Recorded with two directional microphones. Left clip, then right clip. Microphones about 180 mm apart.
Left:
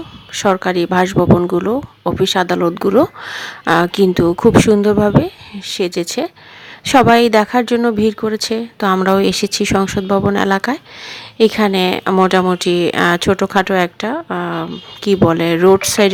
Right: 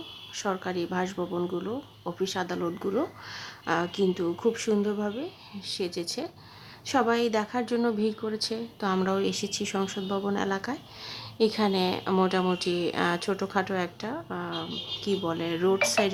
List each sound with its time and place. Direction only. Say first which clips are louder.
0.3 s speech: left 16 dB; 40° left (ahead or behind)